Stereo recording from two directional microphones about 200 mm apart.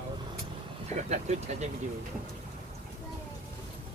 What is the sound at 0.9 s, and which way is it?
Speech, 35° right (ahead or behind).